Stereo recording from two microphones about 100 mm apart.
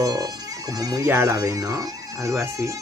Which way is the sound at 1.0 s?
30° right (ahead or behind).